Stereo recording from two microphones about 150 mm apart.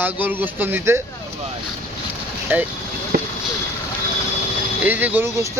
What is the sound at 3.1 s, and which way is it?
Vehicle, 90° right.